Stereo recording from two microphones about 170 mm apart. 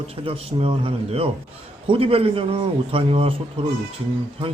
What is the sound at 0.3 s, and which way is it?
Speech, 35° right (ahead or behind).